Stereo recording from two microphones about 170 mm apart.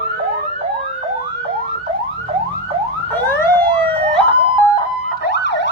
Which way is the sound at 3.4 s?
10° left (ahead or behind).